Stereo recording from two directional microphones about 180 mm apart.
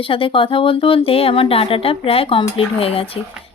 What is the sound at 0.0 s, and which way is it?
Speech, 30° left (ahead or behind).